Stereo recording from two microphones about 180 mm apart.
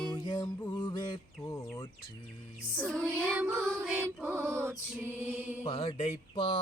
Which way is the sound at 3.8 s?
5° right (ahead or behind).